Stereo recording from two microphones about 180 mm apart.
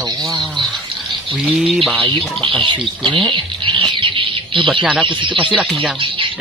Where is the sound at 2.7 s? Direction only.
25° right (ahead or behind).